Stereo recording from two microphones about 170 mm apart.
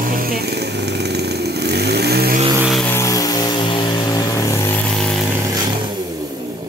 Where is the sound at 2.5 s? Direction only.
5° right (ahead or behind).